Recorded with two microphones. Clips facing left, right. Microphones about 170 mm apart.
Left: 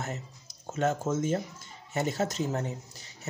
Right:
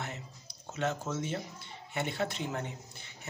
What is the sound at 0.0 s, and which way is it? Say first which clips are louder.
Music: left 4 dB; 45° left (ahead or behind).